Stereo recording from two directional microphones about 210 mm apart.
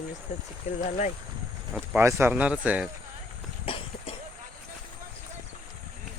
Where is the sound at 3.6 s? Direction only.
25° left (ahead or behind).